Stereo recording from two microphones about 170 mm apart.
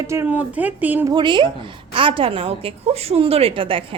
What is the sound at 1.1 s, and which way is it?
A woman's voice, 25° right (ahead or behind).